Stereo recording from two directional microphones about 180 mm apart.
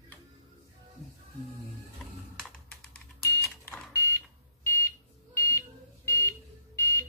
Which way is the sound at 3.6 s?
15° left (ahead or behind).